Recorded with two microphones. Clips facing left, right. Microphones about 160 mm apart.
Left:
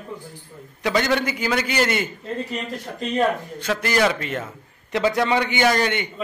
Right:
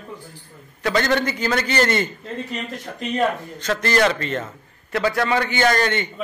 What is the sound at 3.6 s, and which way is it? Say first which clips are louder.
A man's voice: right 2 dB; 10° left (ahead or behind).